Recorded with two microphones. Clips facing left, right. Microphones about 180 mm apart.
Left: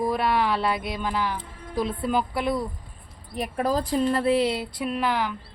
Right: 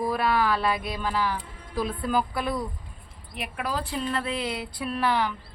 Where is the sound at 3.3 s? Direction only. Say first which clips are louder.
Left 6 dB; 40° left (ahead or behind); by 5.3 s 15° left (ahead or behind).